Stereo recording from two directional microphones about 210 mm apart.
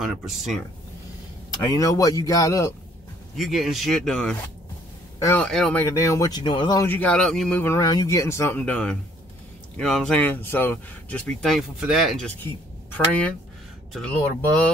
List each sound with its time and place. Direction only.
0.0 s speech: centre (ahead or behind)
1.7 s speech: 15° left (ahead or behind)
3.3 s speech: centre (ahead or behind)